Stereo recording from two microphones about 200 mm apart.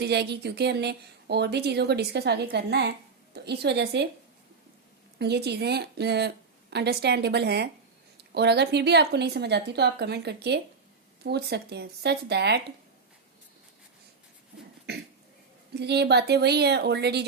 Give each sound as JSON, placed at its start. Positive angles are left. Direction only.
{"t": 0.0, "sound": "speech", "side_deg": -55}
{"t": 5.2, "sound": "speech", "side_deg": -55}
{"t": 14.9, "sound": "cough", "side_deg": -55}
{"t": 15.7, "sound": "speech", "side_deg": -55}